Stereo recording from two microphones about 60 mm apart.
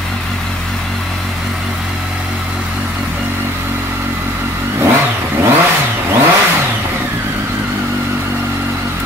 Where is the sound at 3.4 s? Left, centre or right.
Right.